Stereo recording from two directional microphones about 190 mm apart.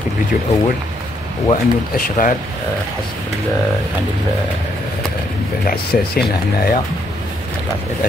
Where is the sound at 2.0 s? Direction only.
45° left (ahead or behind).